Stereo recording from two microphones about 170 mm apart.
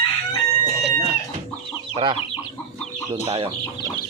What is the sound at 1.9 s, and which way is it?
Chicken, 35° right (ahead or behind).